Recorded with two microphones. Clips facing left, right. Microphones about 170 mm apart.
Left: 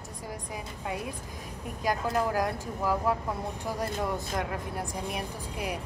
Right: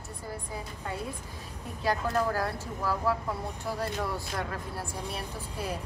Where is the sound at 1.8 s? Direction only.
15° left (ahead or behind).